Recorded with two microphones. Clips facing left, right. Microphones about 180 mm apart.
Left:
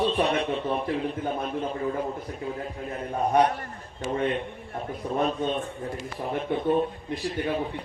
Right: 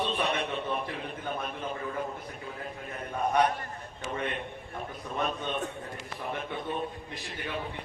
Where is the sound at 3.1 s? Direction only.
35° left (ahead or behind).